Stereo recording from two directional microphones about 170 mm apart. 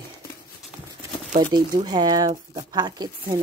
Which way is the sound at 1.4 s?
25° right (ahead or behind).